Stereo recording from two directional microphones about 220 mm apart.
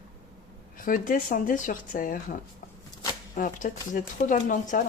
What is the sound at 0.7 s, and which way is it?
Speech, 40° left (ahead or behind).